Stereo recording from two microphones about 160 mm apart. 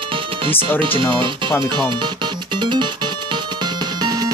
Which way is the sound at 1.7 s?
30° right (ahead or behind).